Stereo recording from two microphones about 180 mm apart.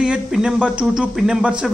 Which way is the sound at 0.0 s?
5° right (ahead or behind).